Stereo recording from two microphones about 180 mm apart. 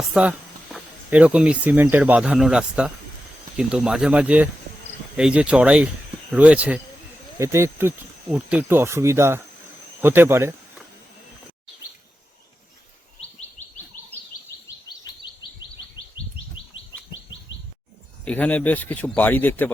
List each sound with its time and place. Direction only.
0.0 s speech: 5° right (ahead or behind)
15.1 s chirp: 20° left (ahead or behind)
18.3 s speech: 10° left (ahead or behind)